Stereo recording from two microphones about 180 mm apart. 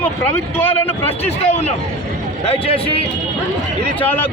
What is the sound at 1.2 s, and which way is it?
Speech, 35° left (ahead or behind).